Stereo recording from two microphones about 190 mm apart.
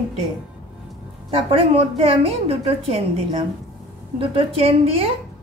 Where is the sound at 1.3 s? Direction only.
30° right (ahead or behind).